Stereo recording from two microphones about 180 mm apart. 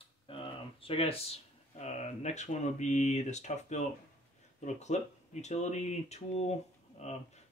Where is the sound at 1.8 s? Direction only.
40° left (ahead or behind).